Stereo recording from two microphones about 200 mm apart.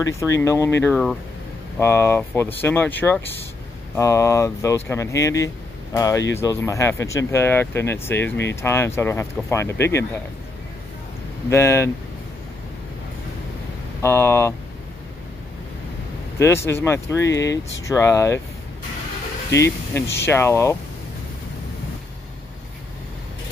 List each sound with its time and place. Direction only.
0.0 s speech: 15° left (ahead or behind)
11.5 s speech: 15° left (ahead or behind)
14.0 s speech: 15° left (ahead or behind)
16.3 s speech: 15° left (ahead or behind)
19.5 s speech: 15° left (ahead or behind)